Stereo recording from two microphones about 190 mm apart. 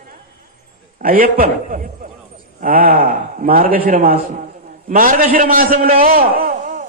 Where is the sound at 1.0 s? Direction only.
50° right (ahead or behind).